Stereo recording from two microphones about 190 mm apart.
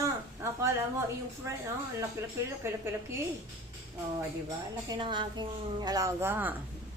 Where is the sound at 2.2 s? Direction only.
15° right (ahead or behind).